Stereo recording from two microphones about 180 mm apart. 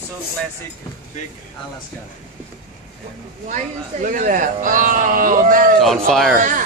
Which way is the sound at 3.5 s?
45° right (ahead or behind).